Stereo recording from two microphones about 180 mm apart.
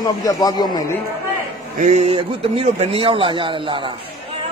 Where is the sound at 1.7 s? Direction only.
40° right (ahead or behind).